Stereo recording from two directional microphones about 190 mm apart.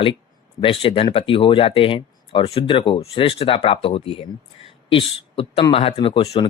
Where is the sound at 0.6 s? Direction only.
30° left (ahead or behind).